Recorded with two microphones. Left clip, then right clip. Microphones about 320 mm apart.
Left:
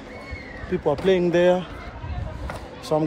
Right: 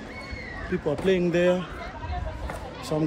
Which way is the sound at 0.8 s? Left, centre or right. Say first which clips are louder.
Left 4 dB; left.